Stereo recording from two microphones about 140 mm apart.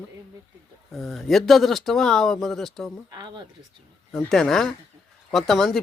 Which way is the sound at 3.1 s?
30° right (ahead or behind).